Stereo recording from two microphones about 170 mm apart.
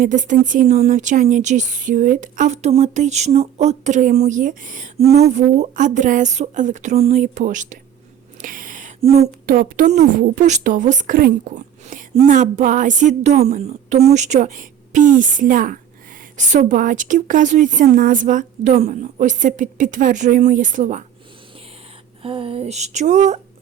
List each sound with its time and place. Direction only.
0.0 s a woman's voice: 50° right (ahead or behind)
8.4 s a sound: 55° right (ahead or behind)
9.0 s speech: 35° right (ahead or behind)
9.5 s a woman's voice: 55° right (ahead or behind)
22.2 s speech: 30° right (ahead or behind)